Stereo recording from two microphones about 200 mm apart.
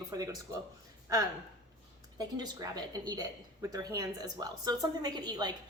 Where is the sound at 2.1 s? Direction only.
20° right (ahead or behind).